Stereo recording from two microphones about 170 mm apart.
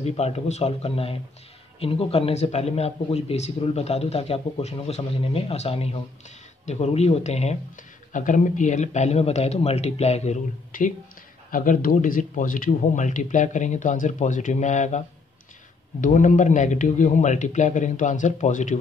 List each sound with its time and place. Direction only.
0.0 s speech: 40° left (ahead or behind)